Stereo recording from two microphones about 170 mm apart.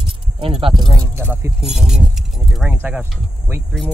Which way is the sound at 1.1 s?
15° right (ahead or behind).